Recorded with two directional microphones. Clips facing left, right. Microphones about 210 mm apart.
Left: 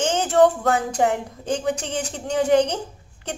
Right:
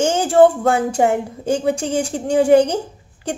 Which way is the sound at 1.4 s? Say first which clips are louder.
Right 5 dB; 10° right (ahead or behind).